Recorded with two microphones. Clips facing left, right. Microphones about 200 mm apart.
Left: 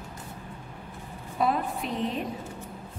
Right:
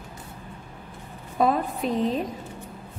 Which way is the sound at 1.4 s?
40° right (ahead or behind).